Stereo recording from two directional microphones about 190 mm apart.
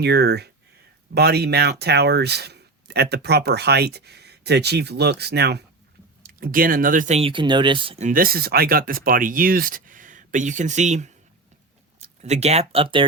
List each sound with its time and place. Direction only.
0.0 s speech: 60° right (ahead or behind)
6.2 s speech: 50° right (ahead or behind); by 13.1 s 25° right (ahead or behind)